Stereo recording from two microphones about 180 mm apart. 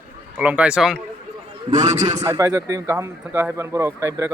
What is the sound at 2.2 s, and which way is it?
Speech, 15° right (ahead or behind).